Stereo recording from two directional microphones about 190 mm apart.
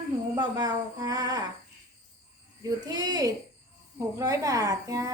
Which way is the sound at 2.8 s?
20° right (ahead or behind).